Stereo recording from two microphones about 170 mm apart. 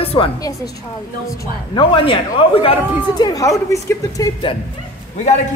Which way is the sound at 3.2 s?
20° left (ahead or behind).